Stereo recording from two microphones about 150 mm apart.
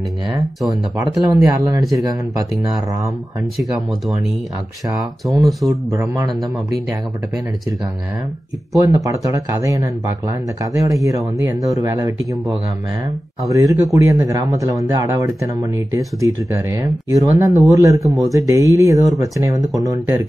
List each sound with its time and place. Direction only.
0.9 s speech: 25° right (ahead or behind)
5.2 s speech: centre (ahead or behind)
5.7 s speech: 20° right (ahead or behind)
8.8 s speech: 20° right (ahead or behind)